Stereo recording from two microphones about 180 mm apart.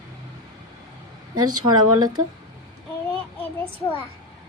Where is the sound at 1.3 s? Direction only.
25° right (ahead or behind).